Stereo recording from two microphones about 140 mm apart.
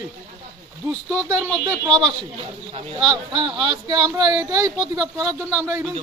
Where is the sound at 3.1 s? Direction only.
35° right (ahead or behind); by 5.9 s 20° right (ahead or behind).